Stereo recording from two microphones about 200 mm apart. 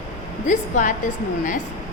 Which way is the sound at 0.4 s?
40° left (ahead or behind).